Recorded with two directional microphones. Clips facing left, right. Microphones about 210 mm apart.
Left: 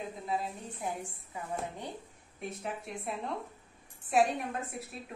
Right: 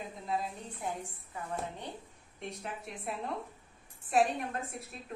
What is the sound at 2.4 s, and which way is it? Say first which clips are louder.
A woman's voice: left 3 dB; centre (ahead or behind).